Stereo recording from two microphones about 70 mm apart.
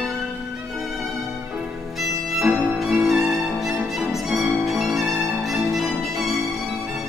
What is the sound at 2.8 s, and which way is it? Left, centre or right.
Violin, centre.